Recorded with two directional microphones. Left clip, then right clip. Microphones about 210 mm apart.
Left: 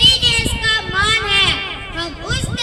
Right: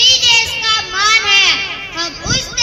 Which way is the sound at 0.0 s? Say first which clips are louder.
Right 2 dB; 30° right (ahead or behind).